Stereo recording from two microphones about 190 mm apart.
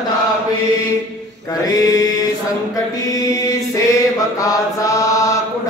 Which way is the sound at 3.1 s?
20° left (ahead or behind).